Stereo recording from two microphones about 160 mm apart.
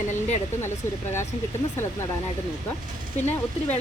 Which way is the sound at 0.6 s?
15° left (ahead or behind).